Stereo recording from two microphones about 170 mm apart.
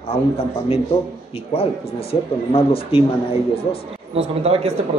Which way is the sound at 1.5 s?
35° left (ahead or behind).